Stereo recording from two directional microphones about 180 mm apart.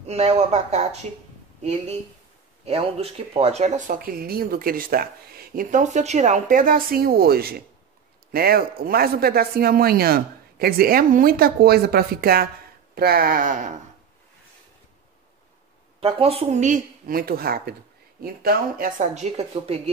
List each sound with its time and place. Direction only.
0.0 s speech: 35° right (ahead or behind)
16.0 s speech: 35° right (ahead or behind)